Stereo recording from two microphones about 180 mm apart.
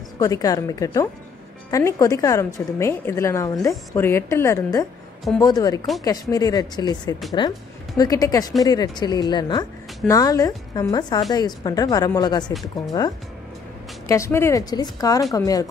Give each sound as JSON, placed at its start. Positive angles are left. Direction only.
{"t": 0.2, "sound": "a woman's voice", "side_deg": 20}
{"t": 14.0, "sound": "a woman's voice", "side_deg": 15}